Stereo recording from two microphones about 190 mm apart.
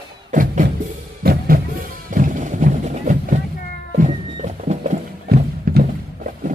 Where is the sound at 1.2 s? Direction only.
50° right (ahead or behind).